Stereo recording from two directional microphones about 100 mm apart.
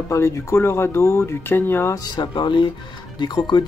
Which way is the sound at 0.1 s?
25° left (ahead or behind).